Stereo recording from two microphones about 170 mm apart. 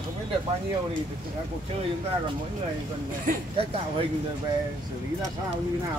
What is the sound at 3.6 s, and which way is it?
Speech, 35° right (ahead or behind).